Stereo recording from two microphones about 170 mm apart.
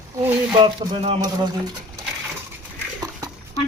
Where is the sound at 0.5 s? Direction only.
25° right (ahead or behind).